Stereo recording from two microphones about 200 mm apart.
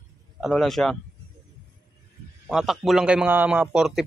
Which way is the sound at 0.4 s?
Centre (ahead or behind).